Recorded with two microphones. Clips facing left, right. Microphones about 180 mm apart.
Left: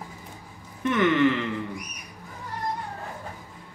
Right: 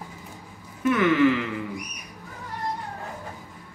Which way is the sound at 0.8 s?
5° right (ahead or behind).